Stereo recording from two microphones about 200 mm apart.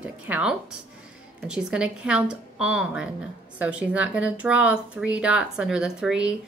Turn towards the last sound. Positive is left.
turn(degrees=-5)  # may be behind; listen again after turning